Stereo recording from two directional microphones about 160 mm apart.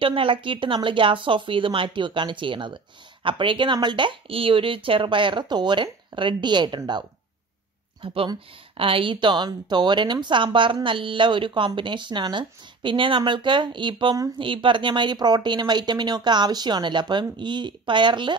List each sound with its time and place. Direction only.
0.0 s speech: 35° right (ahead or behind)